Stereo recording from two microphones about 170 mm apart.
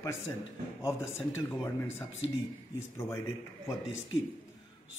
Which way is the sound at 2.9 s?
15° left (ahead or behind).